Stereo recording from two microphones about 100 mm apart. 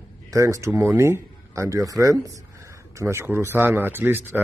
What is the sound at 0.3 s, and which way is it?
A man's voice, 30° right (ahead or behind).